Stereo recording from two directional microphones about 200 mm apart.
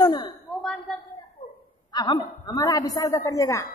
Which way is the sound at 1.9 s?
20° left (ahead or behind).